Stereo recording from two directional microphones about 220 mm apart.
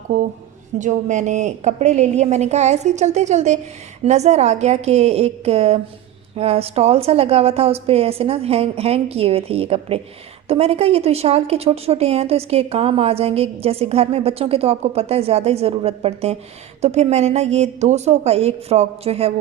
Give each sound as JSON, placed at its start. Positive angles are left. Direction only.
{"t": 0.8, "sound": "a woman's voice", "side_deg": -35}